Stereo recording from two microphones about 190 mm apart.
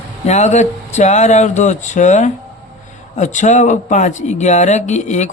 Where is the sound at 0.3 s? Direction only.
35° left (ahead or behind).